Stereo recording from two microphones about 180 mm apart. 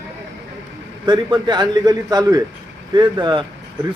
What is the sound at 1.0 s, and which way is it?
A man's voice, 25° right (ahead or behind).